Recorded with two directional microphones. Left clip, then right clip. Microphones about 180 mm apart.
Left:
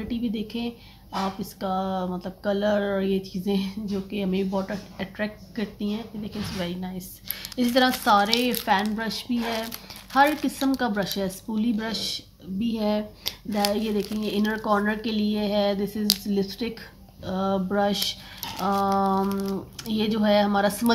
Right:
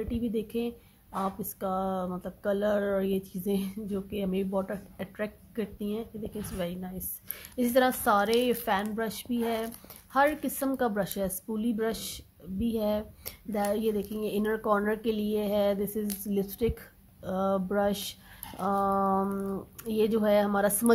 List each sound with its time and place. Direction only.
0.1 s speech: 45° right (ahead or behind)